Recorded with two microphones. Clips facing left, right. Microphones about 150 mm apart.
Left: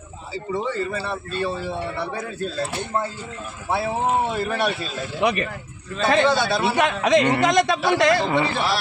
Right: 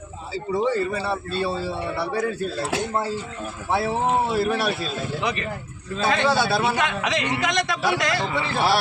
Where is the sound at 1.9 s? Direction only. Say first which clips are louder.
Right 2 dB; 10° right (ahead or behind).